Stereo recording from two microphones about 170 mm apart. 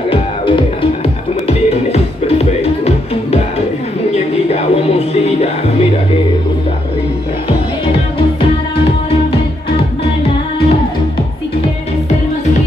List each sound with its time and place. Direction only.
0.1 s music: 30° left (ahead or behind)
1.9 s music: 35° left (ahead or behind)